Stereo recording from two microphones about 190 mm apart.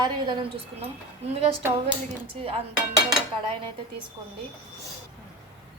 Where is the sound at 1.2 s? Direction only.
35° right (ahead or behind).